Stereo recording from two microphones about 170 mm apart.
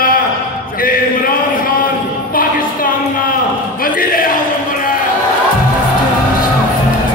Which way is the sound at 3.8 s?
55° left (ahead or behind).